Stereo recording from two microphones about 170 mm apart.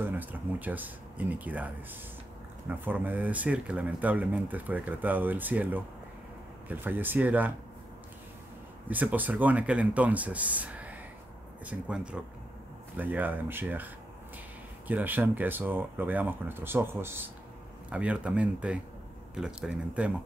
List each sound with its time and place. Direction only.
0.0 s speech: 10° right (ahead or behind)
2.8 s speech: 10° right (ahead or behind)
8.8 s speech: 10° right (ahead or behind)
14.9 s speech: 10° right (ahead or behind)